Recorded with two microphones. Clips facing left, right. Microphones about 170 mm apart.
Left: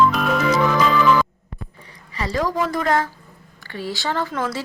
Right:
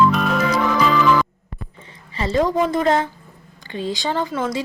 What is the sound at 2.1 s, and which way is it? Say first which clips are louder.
A woman's voice: right 4 dB; 25° right (ahead or behind).